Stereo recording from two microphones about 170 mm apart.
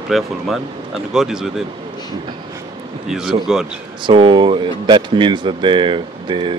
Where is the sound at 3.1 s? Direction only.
5° right (ahead or behind).